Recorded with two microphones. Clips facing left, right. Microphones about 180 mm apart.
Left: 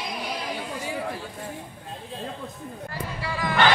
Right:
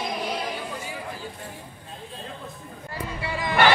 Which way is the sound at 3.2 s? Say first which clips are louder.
Right 1 dB; 20° right (ahead or behind).